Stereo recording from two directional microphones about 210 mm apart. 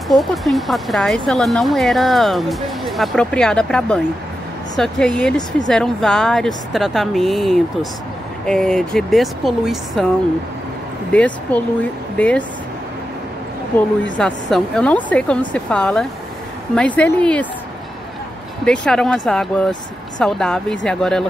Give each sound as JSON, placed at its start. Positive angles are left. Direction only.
{"t": 0.1, "sound": "speech", "side_deg": 0}
{"t": 11.1, "sound": "speech", "side_deg": 5}
{"t": 13.7, "sound": "speech", "side_deg": 5}
{"t": 18.7, "sound": "speech", "side_deg": 5}